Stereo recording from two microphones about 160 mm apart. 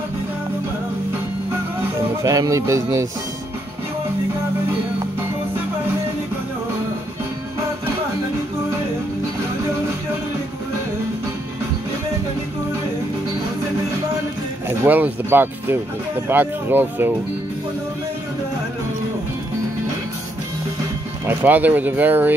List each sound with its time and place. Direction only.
2.0 s music: 20° right (ahead or behind)
14.9 s speech: 10° right (ahead or behind)
21.3 s speech: 10° right (ahead or behind)